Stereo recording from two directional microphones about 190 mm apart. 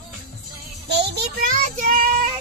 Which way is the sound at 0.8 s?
60° right (ahead or behind).